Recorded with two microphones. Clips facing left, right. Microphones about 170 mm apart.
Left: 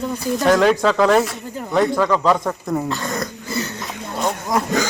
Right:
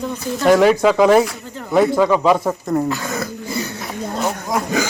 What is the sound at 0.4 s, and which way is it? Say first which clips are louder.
Speech: right 3 dB; 5° right (ahead or behind).